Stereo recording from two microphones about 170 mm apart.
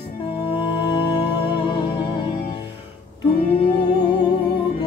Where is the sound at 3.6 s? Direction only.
30° left (ahead or behind).